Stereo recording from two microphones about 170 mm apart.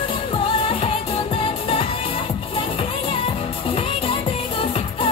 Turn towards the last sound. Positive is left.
turn(degrees=30)  # may be behind; listen again after turning